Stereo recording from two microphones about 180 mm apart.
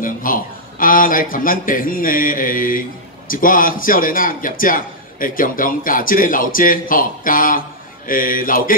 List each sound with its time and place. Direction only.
0.0 s a man's voice: 50° left (ahead or behind)